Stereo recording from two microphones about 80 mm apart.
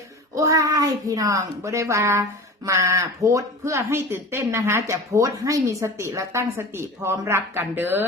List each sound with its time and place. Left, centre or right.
0.3 s a woman's voice: right